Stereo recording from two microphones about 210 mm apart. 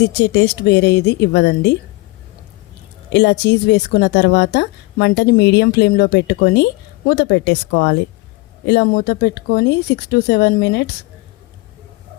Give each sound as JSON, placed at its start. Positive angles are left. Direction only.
{"t": 0.0, "sound": "a woman's voice", "side_deg": 50}
{"t": 3.1, "sound": "a woman's voice", "side_deg": 55}